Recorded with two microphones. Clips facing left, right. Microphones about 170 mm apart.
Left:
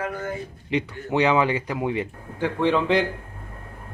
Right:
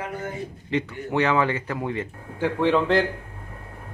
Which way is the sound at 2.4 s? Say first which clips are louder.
Right 1 dB; 5° right (ahead or behind).